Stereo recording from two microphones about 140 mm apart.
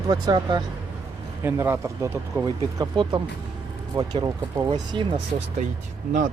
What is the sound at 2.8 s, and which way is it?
Speech, 30° right (ahead or behind).